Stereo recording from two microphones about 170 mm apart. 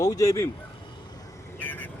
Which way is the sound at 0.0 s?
20° left (ahead or behind).